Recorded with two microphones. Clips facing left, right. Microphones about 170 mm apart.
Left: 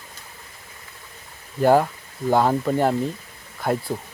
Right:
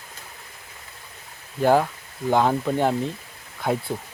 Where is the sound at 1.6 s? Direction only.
10° left (ahead or behind).